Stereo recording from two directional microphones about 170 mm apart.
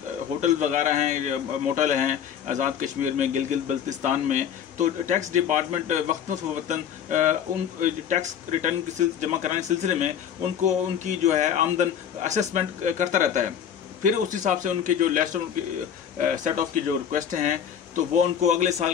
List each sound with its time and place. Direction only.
0.4 s a man's voice: 45° right (ahead or behind)